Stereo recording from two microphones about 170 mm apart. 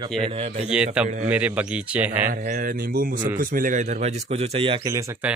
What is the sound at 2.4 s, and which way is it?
A man's voice, 55° right (ahead or behind).